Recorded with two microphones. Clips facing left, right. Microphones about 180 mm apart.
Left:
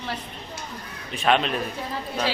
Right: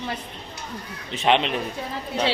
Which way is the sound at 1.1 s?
20° right (ahead or behind).